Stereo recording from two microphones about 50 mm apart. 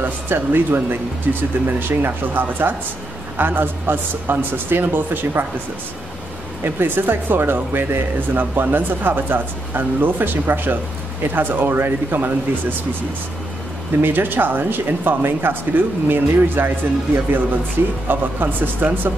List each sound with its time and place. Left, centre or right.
0.0 s speech: right
6.6 s speech: right
14.0 s speech: right